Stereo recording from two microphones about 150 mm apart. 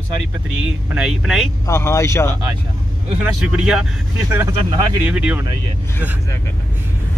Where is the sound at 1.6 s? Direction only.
20° left (ahead or behind).